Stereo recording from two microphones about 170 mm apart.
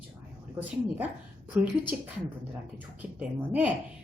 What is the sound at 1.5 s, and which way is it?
Speech, 10° right (ahead or behind).